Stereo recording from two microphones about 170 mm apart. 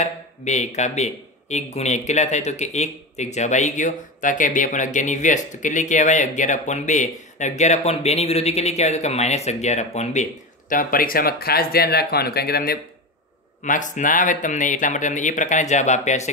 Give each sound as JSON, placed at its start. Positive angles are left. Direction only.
{"t": 0.0, "sound": "speech", "side_deg": 45}
{"t": 10.7, "sound": "speech", "side_deg": 55}
{"t": 13.7, "sound": "speech", "side_deg": 50}